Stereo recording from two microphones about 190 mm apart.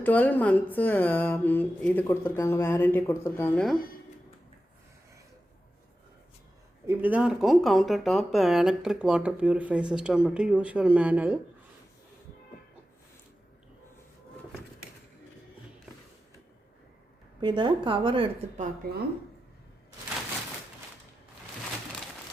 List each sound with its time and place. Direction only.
0.0 s speech: 10° left (ahead or behind)
6.8 s speech: 10° right (ahead or behind)
17.4 s a woman's voice: 25° right (ahead or behind)